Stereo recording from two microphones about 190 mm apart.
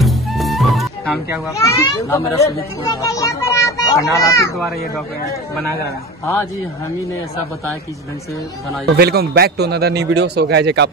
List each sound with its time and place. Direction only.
0.0 s music: centre (ahead or behind)
1.6 s a child's voice: 15° left (ahead or behind)
8.9 s a man's voice: 55° right (ahead or behind)